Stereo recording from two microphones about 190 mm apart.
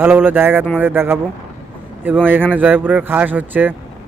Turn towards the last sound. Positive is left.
turn(degrees=-10)  # may be behind; listen again after turning